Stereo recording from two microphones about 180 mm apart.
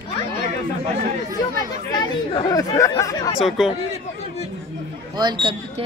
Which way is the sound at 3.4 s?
Centre (ahead or behind).